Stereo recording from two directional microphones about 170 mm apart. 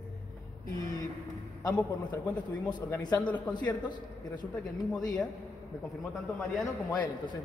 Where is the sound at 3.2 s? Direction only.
10° left (ahead or behind).